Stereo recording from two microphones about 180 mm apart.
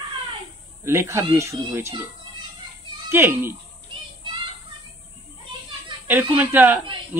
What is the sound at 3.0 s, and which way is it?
Speech, 10° right (ahead or behind).